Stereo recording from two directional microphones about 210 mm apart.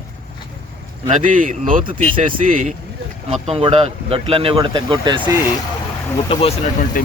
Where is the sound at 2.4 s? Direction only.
40° right (ahead or behind); by 5.3 s 20° right (ahead or behind).